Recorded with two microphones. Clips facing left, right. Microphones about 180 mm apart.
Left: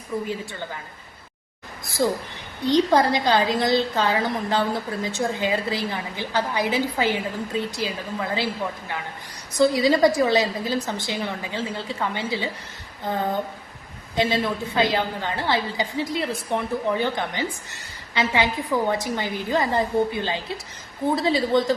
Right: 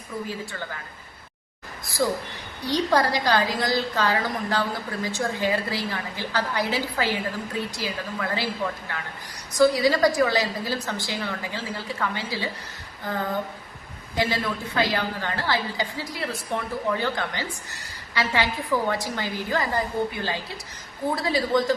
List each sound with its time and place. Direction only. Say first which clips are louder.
2.0 s a woman's voice: left 2 dB; 20° left (ahead or behind)
9.6 s a woman's voice: left 1 dB; 20° left (ahead or behind)
14.2 s a woman's voice: left 3 dB; 25° left (ahead or behind)